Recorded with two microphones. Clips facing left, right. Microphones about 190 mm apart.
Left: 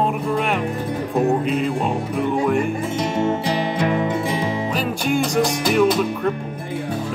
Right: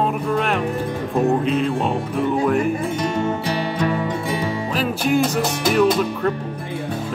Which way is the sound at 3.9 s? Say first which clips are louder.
Left 2 dB; 20° left (ahead or behind).